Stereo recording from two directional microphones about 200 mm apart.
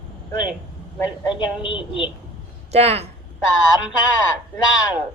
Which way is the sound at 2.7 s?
30° right (ahead or behind).